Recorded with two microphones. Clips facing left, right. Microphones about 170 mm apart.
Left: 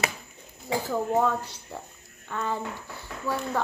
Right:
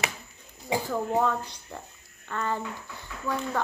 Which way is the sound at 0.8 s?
5° left (ahead or behind).